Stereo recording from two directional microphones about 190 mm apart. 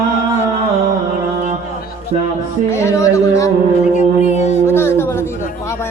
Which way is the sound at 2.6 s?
15° left (ahead or behind).